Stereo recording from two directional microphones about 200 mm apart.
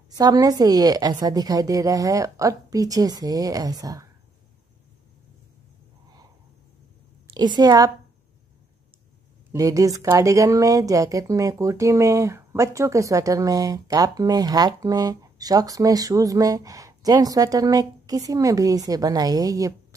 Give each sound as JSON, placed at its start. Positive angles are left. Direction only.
{"t": 0.1, "sound": "speech", "side_deg": -20}
{"t": 7.2, "sound": "a woman's voice", "side_deg": -20}
{"t": 9.5, "sound": "speech", "side_deg": -15}